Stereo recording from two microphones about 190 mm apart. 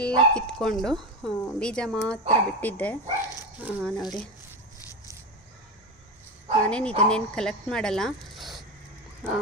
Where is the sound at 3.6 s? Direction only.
10° right (ahead or behind).